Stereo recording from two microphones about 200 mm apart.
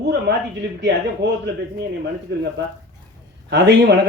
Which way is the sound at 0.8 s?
55° right (ahead or behind).